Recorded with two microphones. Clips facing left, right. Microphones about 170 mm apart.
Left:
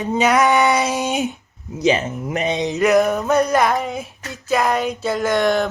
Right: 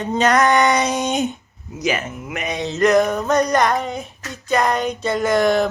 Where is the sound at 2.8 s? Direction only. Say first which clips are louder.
Even; 5° left (ahead or behind).